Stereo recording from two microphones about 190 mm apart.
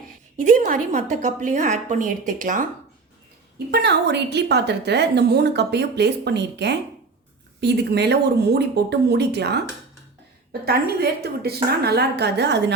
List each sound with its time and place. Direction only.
0.4 s a woman's voice: 45° right (ahead or behind)
3.7 s a woman's voice: 60° right (ahead or behind)
10.7 s a woman's voice: 55° right (ahead or behind)